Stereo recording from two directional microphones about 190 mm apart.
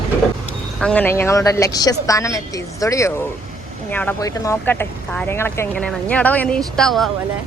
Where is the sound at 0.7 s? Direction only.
5° left (ahead or behind).